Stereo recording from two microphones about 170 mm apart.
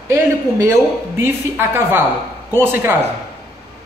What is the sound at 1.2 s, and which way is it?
Speech, 15° right (ahead or behind).